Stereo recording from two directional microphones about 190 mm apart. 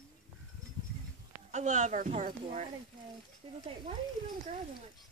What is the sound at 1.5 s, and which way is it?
A woman's voice, 40° right (ahead or behind).